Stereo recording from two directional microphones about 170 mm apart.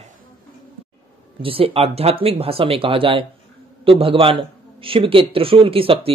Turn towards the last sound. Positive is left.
turn(degrees=-30)  # may be behind; listen again after turning